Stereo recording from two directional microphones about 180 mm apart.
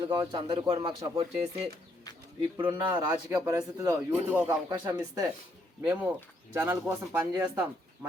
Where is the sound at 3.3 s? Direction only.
15° right (ahead or behind).